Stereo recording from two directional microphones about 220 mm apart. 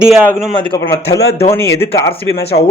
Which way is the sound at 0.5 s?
20° left (ahead or behind).